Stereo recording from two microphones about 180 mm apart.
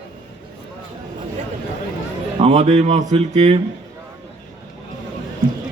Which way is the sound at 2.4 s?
35° right (ahead or behind).